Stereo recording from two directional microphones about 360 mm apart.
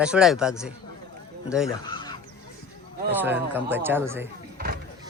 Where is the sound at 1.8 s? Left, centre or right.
Centre.